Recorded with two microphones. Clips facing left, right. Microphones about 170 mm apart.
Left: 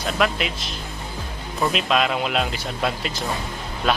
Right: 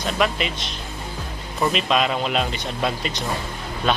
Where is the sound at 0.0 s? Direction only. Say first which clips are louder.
Even; centre (ahead or behind).